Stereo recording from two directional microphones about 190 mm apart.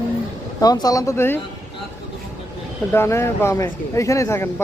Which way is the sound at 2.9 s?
15° left (ahead or behind).